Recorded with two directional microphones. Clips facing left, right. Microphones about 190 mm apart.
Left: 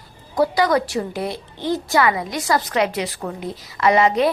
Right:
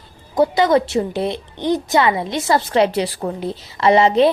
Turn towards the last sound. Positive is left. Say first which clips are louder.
# right 3 dB
turn(degrees=-30)  # may be behind; listen again after turning